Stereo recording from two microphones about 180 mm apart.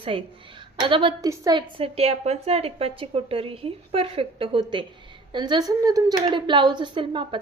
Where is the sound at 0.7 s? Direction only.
25° right (ahead or behind).